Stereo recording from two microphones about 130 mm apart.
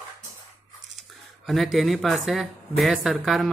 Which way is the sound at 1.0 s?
Centre (ahead or behind).